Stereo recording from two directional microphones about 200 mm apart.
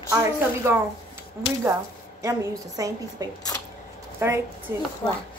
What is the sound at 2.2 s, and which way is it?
A woman's voice, 15° right (ahead or behind).